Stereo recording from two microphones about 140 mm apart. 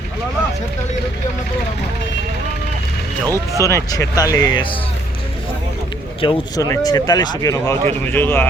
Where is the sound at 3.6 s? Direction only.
25° left (ahead or behind).